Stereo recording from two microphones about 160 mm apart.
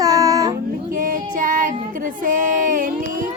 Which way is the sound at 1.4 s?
55° right (ahead or behind).